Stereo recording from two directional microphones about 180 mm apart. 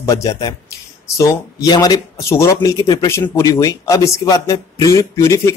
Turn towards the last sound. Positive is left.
turn(degrees=15)  # may be behind; listen again after turning